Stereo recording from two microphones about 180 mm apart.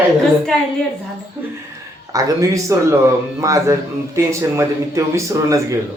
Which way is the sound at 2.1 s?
20° right (ahead or behind).